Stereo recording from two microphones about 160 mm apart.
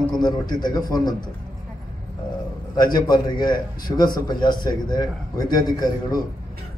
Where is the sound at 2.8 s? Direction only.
25° left (ahead or behind).